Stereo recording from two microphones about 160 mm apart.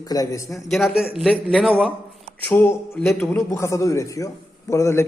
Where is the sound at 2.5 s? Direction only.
15° left (ahead or behind).